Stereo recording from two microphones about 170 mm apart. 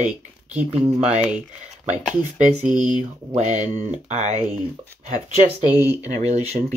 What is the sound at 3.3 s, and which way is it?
Speech, 45° right (ahead or behind).